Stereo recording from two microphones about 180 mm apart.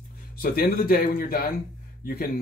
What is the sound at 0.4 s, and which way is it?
Speech, 55° left (ahead or behind).